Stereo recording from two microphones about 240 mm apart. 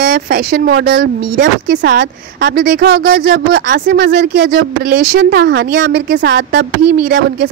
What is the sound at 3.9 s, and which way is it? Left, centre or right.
A woman's voice, right.